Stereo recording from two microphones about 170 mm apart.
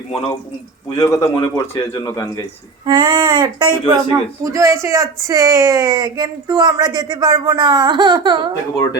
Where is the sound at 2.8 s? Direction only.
30° right (ahead or behind).